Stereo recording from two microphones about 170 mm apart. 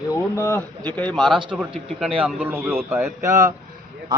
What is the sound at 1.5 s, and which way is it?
A man's voice, 10° right (ahead or behind).